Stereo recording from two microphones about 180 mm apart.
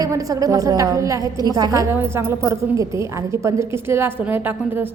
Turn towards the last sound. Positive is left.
turn(degrees=-10)  # may be behind; listen again after turning